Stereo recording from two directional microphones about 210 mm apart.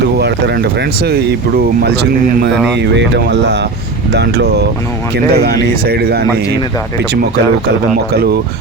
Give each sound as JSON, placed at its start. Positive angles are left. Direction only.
{"t": 0.2, "sound": "speech", "side_deg": -50}